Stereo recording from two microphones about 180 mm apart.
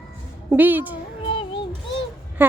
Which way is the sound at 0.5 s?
10° right (ahead or behind).